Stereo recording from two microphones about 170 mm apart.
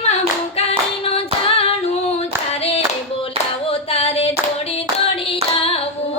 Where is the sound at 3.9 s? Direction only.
35° left (ahead or behind).